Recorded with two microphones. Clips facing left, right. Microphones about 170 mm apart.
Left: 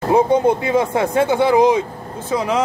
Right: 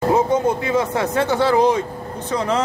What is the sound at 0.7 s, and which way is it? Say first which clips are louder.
Speech: left 2 dB; 25° left (ahead or behind).